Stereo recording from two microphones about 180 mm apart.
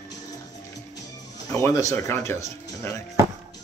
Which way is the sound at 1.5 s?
15° left (ahead or behind).